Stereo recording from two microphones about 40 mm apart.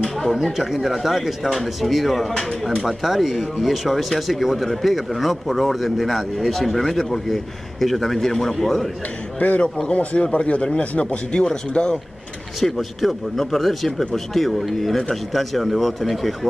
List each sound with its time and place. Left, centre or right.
0.0 s a sound: centre
0.4 s speech: centre
9.4 s a man's voice: left
9.8 s speech: left
12.5 s speech: centre